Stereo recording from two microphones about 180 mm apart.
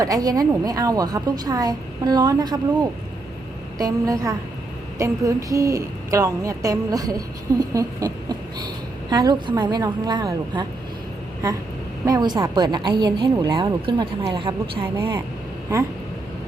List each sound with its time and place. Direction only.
0.0 s a woman's voice: 20° right (ahead or behind)
3.8 s a woman's voice: 20° right (ahead or behind)
7.6 s a sound: 20° right (ahead or behind)
9.0 s a woman's voice: 25° right (ahead or behind)
12.0 s a woman's voice: 20° right (ahead or behind)
14.9 s speech: 15° right (ahead or behind)